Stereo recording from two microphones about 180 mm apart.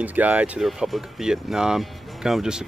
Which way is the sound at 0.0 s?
10° right (ahead or behind).